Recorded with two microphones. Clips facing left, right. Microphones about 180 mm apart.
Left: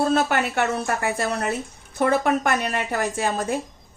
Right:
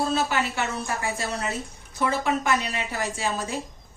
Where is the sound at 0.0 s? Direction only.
60° left (ahead or behind).